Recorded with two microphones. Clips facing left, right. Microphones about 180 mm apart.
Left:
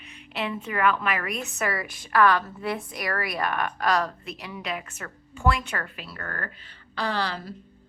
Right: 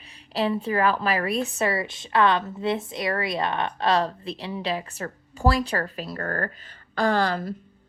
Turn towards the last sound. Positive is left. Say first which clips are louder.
# right 6 dB
turn(degrees=-50)  # may be behind; listen again after turning